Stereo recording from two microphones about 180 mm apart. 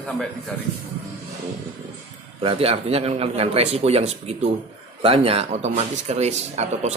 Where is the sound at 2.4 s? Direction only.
30° right (ahead or behind).